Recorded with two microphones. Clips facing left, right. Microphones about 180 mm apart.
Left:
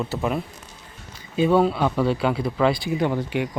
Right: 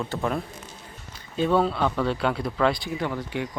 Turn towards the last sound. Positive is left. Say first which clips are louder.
# left 5 dB
turn(degrees=15)  # may be behind; listen again after turning